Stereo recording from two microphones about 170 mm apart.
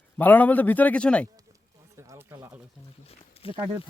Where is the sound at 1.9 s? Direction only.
15° right (ahead or behind).